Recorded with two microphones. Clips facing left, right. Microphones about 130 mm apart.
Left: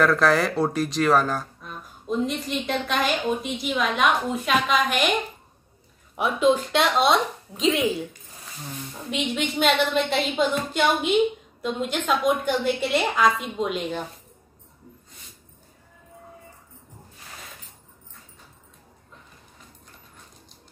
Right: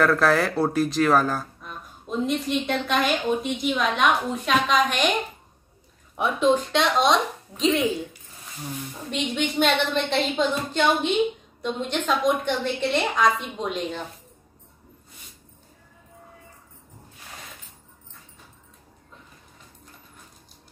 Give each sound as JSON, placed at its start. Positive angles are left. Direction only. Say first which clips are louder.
{"t": 0.0, "sound": "speech", "louder": "even", "side_deg": 0}
{"t": 6.1, "sound": "speech", "louder": "even", "side_deg": 5}